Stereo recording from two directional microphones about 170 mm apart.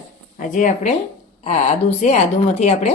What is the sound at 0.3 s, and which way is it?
Speech, 50° left (ahead or behind).